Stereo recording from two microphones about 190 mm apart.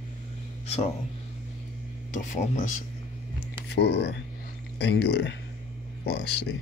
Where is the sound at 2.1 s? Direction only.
45° left (ahead or behind).